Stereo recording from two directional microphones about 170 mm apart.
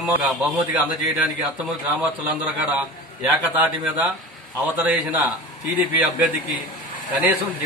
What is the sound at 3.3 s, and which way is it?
Speech, 10° right (ahead or behind).